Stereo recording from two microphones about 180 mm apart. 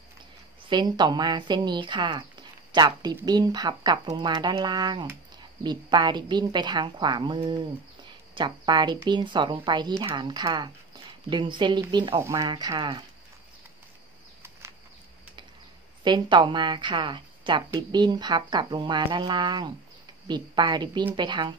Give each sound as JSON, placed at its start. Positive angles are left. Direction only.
{"t": 0.7, "sound": "speech", "side_deg": -25}
{"t": 16.0, "sound": "speech", "side_deg": -25}